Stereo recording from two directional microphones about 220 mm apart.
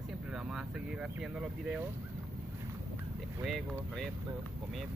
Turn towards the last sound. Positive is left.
turn(degrees=0)  # may be behind; listen again after turning